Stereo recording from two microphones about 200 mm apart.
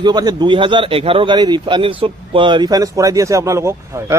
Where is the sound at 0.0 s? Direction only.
20° right (ahead or behind).